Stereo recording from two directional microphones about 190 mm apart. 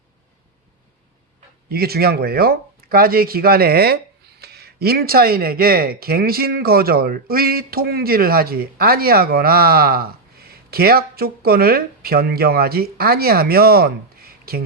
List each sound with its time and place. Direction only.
1.7 s speech: 55° right (ahead or behind)